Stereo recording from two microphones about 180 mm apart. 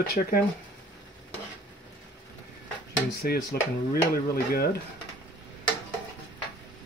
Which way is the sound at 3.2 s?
60° left (ahead or behind).